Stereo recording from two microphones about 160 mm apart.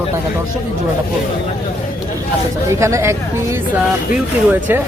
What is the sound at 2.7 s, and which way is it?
Speech, 15° right (ahead or behind).